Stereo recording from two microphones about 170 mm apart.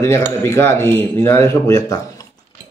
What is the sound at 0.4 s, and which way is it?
Speech, 15° left (ahead or behind).